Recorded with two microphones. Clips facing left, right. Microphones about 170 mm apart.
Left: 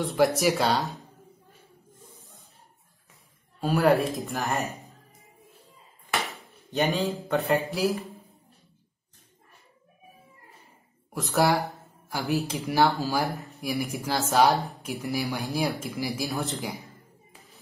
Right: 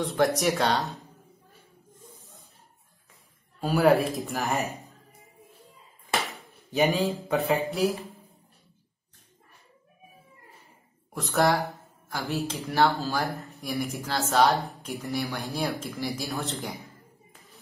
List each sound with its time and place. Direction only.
0.0 s speech: centre (ahead or behind)
3.6 s speech: centre (ahead or behind)
6.7 s speech: centre (ahead or behind)
11.1 s speech: 10° left (ahead or behind)
13.3 s speech: centre (ahead or behind)
14.2 s speech: 15° left (ahead or behind)
14.5 s speech: 5° left (ahead or behind)
16.4 s speech: centre (ahead or behind)